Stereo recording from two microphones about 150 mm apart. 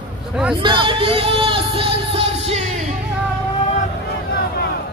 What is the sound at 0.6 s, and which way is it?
Music, 30° right (ahead or behind).